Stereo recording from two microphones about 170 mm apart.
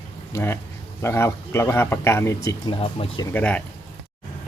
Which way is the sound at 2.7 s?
30° left (ahead or behind).